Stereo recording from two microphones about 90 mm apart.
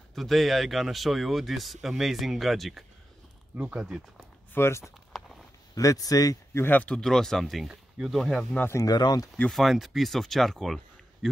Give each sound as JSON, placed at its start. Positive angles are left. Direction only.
{"t": 0.1, "sound": "speech", "side_deg": 0}
{"t": 4.6, "sound": "speech", "side_deg": 30}
{"t": 4.8, "sound": "a sound", "side_deg": 0}
{"t": 5.8, "sound": "speech", "side_deg": 40}
{"t": 6.5, "sound": "speech", "side_deg": 20}
{"t": 8.2, "sound": "speech", "side_deg": 5}
{"t": 8.5, "sound": "speech", "side_deg": 25}
{"t": 8.8, "sound": "speech", "side_deg": 50}
{"t": 9.5, "sound": "speech", "side_deg": 0}